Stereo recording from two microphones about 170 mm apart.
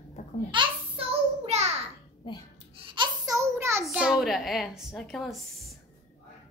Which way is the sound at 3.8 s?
5° right (ahead or behind).